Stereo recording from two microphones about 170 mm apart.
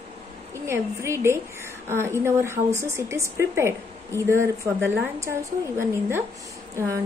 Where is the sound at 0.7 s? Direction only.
15° right (ahead or behind).